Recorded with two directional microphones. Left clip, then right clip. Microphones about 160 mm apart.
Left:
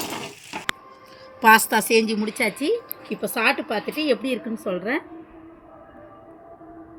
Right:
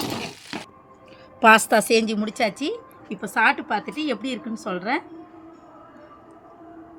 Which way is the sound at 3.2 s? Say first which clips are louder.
Right 2 dB; 65° right (ahead or behind).